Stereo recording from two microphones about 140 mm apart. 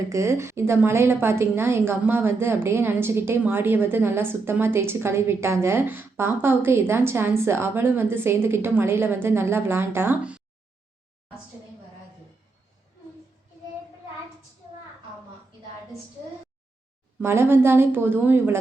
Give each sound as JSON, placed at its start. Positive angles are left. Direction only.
{"t": 0.1, "sound": "a woman's voice", "side_deg": -20}
{"t": 17.2, "sound": "a woman's voice", "side_deg": -20}